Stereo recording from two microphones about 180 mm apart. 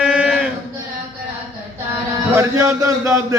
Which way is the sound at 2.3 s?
15° right (ahead or behind).